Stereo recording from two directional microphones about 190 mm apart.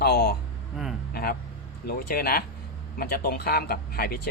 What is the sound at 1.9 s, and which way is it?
Speech, 50° left (ahead or behind).